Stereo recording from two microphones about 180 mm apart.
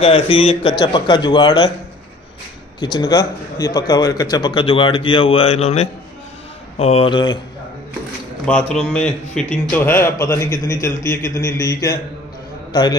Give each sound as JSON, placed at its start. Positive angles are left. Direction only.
{"t": 0.0, "sound": "a man's voice", "side_deg": 30}
{"t": 2.8, "sound": "a man's voice", "side_deg": 25}
{"t": 8.5, "sound": "a man's voice", "side_deg": 5}